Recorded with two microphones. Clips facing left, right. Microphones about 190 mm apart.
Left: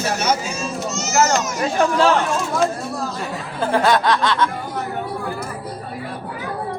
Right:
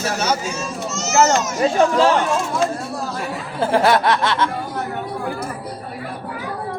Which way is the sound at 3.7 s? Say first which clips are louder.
Right 1 dB; 25° right (ahead or behind).